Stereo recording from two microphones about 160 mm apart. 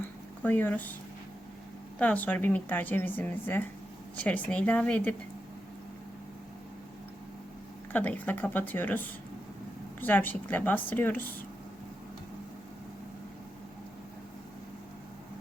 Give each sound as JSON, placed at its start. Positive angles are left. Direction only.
{"t": 0.4, "sound": "speech", "side_deg": 10}
{"t": 2.0, "sound": "speech", "side_deg": 10}
{"t": 7.9, "sound": "speech", "side_deg": 10}